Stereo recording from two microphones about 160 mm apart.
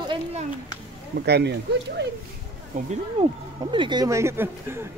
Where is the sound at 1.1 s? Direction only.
90° right.